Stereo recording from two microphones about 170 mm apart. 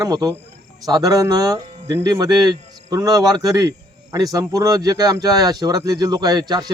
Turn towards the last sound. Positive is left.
turn(degrees=-25)  # may be behind; listen again after turning